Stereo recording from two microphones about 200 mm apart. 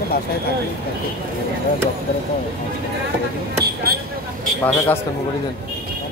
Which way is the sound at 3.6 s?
50° right (ahead or behind).